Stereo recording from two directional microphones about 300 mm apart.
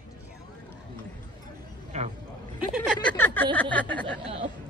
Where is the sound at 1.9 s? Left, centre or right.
Right.